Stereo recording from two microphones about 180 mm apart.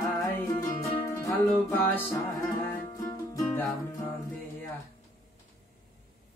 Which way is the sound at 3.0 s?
20° left (ahead or behind).